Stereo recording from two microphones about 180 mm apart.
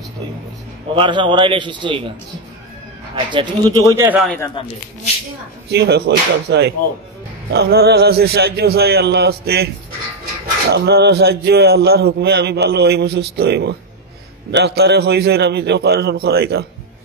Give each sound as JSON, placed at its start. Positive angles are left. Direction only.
{"t": 0.9, "sound": "a man's voice", "side_deg": -25}
{"t": 3.3, "sound": "a man's voice", "side_deg": -25}
{"t": 4.6, "sound": "speech", "side_deg": 30}
{"t": 5.7, "sound": "a man's voice", "side_deg": -65}
{"t": 10.7, "sound": "a man's voice", "side_deg": -65}